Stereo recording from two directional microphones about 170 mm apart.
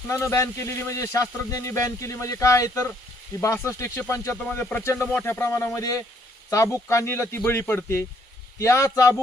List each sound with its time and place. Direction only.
0.1 s speech: 15° left (ahead or behind)